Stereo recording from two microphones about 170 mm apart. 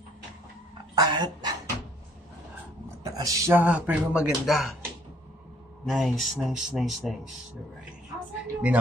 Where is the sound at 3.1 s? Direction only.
20° right (ahead or behind); by 4.8 s centre (ahead or behind).